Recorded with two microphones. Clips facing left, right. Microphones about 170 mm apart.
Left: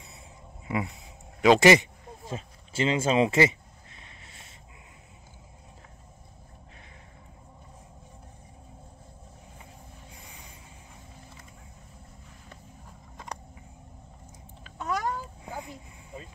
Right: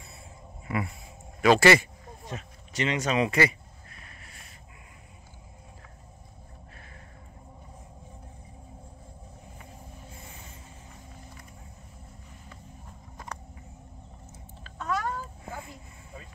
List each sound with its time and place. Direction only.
0.7 s speech: 20° left (ahead or behind)
2.3 s a sound: 30° left (ahead or behind)
14.6 s babbling: 15° left (ahead or behind)